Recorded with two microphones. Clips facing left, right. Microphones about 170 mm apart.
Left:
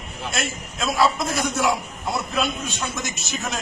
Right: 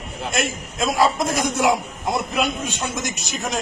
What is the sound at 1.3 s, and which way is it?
A man's voice, 15° right (ahead or behind).